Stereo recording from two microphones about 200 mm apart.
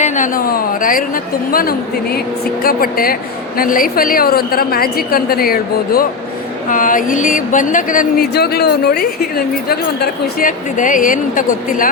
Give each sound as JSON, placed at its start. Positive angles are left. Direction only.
{"t": 0.0, "sound": "speech", "side_deg": 40}
{"t": 2.6, "sound": "a woman's voice", "side_deg": 45}